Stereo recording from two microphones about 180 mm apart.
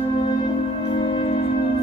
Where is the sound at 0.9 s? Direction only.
30° left (ahead or behind).